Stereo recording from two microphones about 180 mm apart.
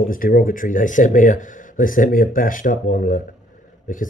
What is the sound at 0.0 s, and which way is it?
Speech, 50° left (ahead or behind).